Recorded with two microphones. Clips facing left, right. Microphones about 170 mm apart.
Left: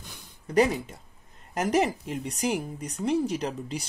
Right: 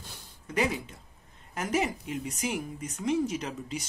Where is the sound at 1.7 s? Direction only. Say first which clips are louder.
Left 4 dB; 40° left (ahead or behind).